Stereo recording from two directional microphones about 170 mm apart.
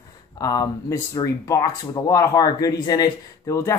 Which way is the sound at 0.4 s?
20° left (ahead or behind).